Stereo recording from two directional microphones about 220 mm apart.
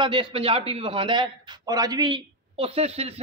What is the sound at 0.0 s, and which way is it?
A man's voice, 25° right (ahead or behind).